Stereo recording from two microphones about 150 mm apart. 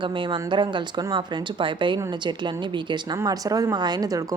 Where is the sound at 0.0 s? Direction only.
35° right (ahead or behind).